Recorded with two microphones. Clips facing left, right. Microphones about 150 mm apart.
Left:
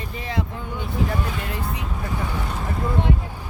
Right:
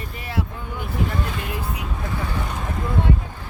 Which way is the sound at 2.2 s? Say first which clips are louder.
Right 1 dB; 15° left (ahead or behind).